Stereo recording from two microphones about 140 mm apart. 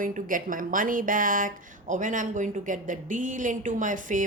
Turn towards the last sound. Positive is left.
turn(degrees=-65)  # may be behind; listen again after turning